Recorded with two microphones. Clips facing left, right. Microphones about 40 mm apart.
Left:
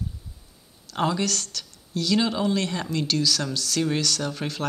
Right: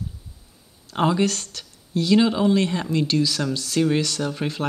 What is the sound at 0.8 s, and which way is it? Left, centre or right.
Speech, centre.